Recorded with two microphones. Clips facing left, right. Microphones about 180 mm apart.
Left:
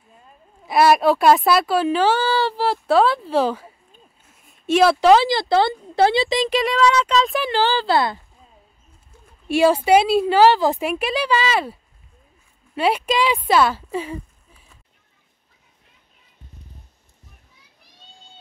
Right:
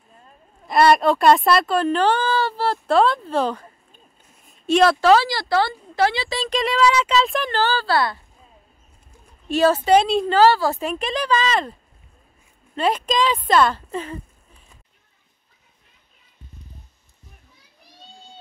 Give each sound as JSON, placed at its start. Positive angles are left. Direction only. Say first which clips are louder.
{"t": 0.7, "sound": "a woman's voice", "louder": "left 1 dB", "side_deg": 5}
{"t": 5.0, "sound": "speech", "louder": "left 2 dB", "side_deg": 20}
{"t": 6.5, "sound": "speech", "louder": "right 1 dB", "side_deg": 0}
{"t": 9.5, "sound": "speech", "louder": "left 1 dB", "side_deg": 10}